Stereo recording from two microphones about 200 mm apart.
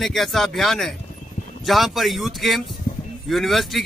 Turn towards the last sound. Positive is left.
turn(degrees=0)  # may be behind; listen again after turning